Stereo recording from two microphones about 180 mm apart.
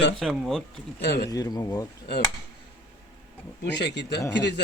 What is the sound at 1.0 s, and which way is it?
Speech, 70° left (ahead or behind).